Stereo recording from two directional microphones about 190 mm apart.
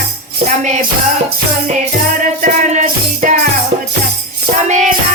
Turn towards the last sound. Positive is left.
turn(degrees=-45)  # may be behind; listen again after turning